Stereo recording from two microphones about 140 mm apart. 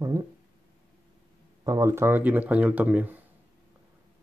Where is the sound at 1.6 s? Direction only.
25° right (ahead or behind).